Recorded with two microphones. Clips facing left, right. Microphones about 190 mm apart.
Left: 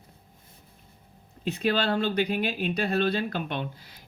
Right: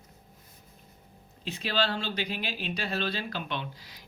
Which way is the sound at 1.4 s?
55° left (ahead or behind).